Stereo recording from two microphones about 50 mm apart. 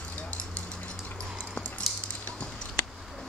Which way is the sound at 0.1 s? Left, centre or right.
Left.